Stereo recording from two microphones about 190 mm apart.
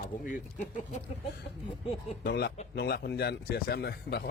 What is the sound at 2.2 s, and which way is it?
Speech, 60° left (ahead or behind).